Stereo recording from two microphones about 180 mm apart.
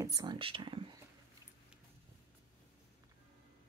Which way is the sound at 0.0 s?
20° right (ahead or behind).